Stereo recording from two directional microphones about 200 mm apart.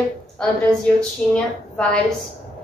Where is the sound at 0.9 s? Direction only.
5° left (ahead or behind).